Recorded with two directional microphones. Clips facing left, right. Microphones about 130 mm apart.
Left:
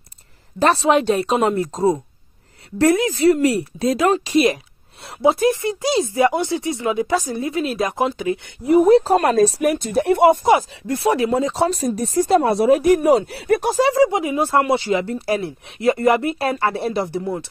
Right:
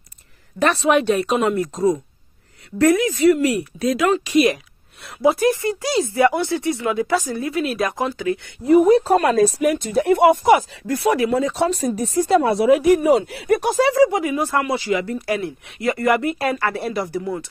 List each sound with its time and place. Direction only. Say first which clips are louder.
0.6 s speech: left 1 dB; 30° left (ahead or behind)
9.1 s speech: even; 35° left (ahead or behind)